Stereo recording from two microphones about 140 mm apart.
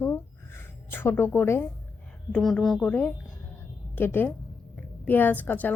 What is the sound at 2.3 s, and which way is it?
A woman's voice, 5° left (ahead or behind).